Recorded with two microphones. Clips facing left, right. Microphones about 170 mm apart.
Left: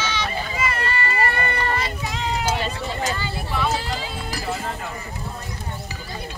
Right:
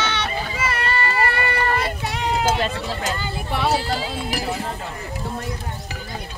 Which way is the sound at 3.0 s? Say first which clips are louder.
Even; 65° right (ahead or behind).